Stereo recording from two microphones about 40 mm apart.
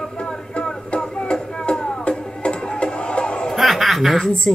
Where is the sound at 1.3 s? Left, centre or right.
Centre.